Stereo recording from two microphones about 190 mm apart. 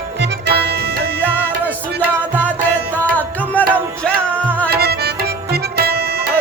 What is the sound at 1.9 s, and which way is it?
Music, 10° left (ahead or behind).